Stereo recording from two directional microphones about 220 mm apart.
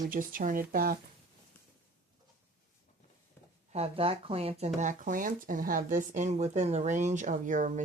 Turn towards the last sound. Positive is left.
turn(degrees=-35)  # may be behind; listen again after turning